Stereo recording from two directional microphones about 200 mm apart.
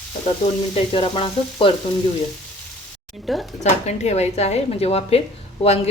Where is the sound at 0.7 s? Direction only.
30° left (ahead or behind).